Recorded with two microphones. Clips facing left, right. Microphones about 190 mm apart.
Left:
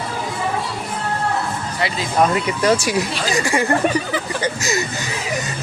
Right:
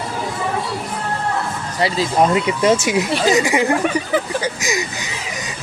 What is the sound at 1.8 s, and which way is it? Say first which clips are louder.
Speech: right 5 dB; 35° right (ahead or behind).